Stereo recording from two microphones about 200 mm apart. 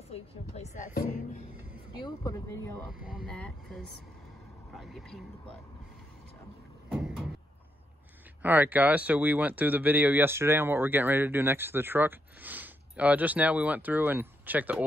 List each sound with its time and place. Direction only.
0.1 s a woman's voice: 35° left (ahead or behind)
2.0 s speech: 15° left (ahead or behind)
3.1 s speech: centre (ahead or behind)
8.4 s speech: 10° right (ahead or behind)